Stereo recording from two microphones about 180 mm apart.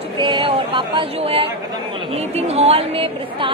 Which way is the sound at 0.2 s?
30° right (ahead or behind).